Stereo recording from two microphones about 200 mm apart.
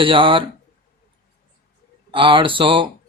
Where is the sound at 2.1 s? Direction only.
25° right (ahead or behind).